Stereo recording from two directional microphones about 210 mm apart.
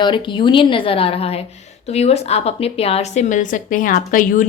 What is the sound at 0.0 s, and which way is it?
A woman's voice, 25° left (ahead or behind).